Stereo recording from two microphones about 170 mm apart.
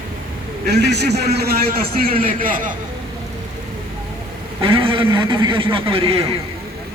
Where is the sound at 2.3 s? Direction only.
55° right (ahead or behind).